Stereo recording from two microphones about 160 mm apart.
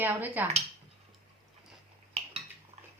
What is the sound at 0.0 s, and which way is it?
Speech, 10° right (ahead or behind).